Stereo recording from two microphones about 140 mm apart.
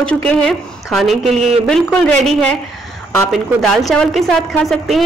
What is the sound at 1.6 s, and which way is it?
A woman's voice, 5° left (ahead or behind).